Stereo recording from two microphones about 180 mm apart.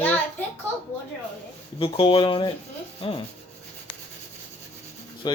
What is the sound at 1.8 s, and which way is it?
Speech, 30° left (ahead or behind).